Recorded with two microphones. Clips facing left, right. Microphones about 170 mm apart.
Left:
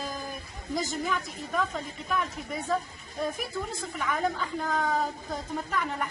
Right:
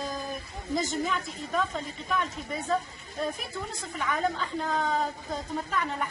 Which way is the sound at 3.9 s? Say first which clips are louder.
Right 1 dB; centre (ahead or behind).